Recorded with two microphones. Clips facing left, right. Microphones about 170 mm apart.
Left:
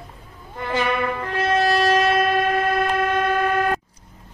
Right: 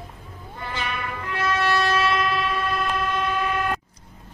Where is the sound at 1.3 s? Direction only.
35° left (ahead or behind); by 3.8 s 55° left (ahead or behind).